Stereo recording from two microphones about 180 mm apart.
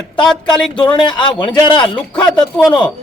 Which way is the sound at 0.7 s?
25° left (ahead or behind).